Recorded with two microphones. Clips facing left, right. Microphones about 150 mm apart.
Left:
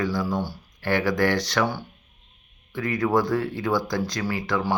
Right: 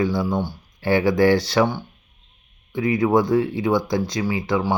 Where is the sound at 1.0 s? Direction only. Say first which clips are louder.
Right 8 dB; 25° right (ahead or behind).